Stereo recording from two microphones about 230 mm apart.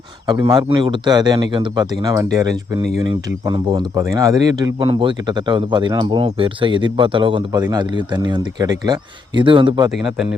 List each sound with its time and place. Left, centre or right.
0.3 s a man's voice: centre
3.4 s speech: right